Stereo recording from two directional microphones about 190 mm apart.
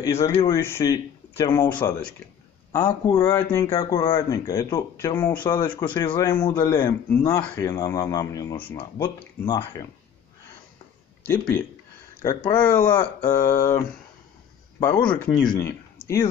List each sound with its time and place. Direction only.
0.0 s speech: 15° left (ahead or behind)
2.7 s speech: 20° left (ahead or behind); by 7.6 s 5° left (ahead or behind)
7.6 s speech: 15° left (ahead or behind)
11.2 s speech: 10° left (ahead or behind)
15.4 s speech: 20° left (ahead or behind)